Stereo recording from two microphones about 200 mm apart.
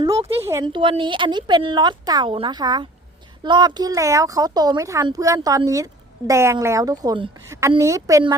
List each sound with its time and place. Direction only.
0.2 s a woman's voice: 30° right (ahead or behind)
0.4 s a woman's voice: 20° right (ahead or behind)